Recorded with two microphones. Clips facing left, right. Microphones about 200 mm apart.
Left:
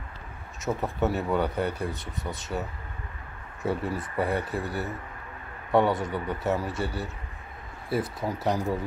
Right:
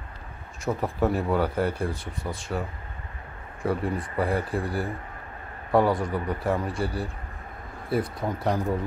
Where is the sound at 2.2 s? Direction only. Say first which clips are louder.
Right 1 dB; 20° left (ahead or behind).